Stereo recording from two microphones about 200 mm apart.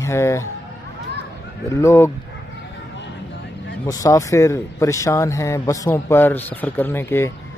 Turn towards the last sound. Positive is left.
turn(degrees=10)  # may be behind; listen again after turning